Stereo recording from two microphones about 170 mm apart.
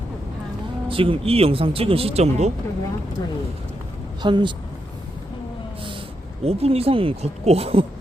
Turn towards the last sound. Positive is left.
turn(degrees=-35)  # may be behind; listen again after turning